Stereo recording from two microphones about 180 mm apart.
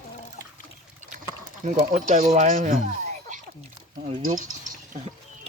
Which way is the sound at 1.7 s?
45° right (ahead or behind).